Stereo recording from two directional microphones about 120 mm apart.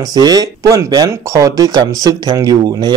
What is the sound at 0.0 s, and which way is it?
Speech, 35° right (ahead or behind).